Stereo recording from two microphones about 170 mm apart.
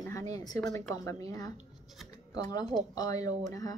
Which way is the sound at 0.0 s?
20° left (ahead or behind).